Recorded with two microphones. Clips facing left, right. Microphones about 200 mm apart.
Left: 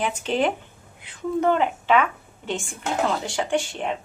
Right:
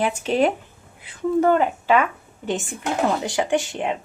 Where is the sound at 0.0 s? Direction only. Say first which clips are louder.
Right 3 dB; 10° right (ahead or behind).